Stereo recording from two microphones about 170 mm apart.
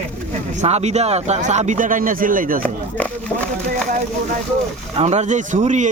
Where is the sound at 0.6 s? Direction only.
40° right (ahead or behind).